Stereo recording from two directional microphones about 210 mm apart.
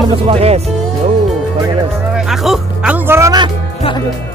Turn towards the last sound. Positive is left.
turn(degrees=-15)  # may be behind; listen again after turning